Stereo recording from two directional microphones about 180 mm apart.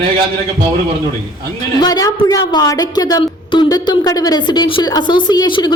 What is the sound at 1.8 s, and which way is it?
A woman's voice, 20° left (ahead or behind).